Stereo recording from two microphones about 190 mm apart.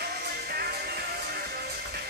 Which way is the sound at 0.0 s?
55° right (ahead or behind).